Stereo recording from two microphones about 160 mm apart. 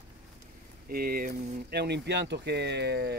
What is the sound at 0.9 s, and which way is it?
Speech, 70° right (ahead or behind).